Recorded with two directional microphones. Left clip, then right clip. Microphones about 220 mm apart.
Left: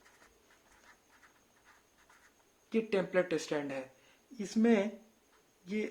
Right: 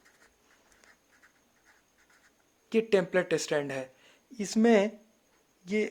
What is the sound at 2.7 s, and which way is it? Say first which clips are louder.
Speech: right 5 dB; 35° right (ahead or behind).